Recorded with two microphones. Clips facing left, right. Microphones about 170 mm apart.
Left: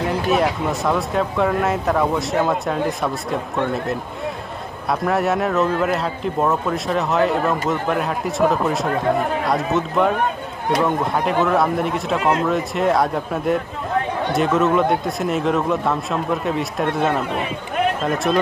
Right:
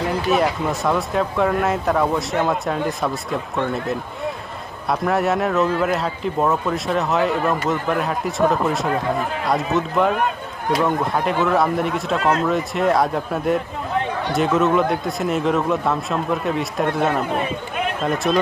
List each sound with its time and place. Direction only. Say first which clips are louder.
0.0 s a man's voice: even; centre (ahead or behind)
12.2 s speech: even; 20° left (ahead or behind)
12.4 s a man's voice: even; centre (ahead or behind)